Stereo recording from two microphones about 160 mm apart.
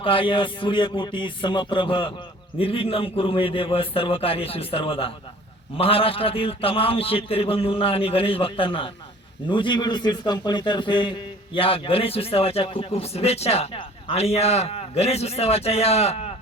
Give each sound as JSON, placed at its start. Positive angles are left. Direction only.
{"t": 0.0, "sound": "a man's voice", "side_deg": 35}